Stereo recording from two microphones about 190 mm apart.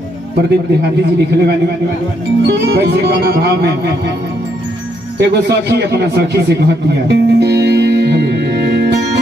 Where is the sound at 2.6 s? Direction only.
60° right (ahead or behind).